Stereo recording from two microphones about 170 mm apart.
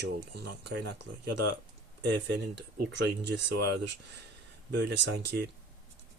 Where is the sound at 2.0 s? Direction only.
90° right.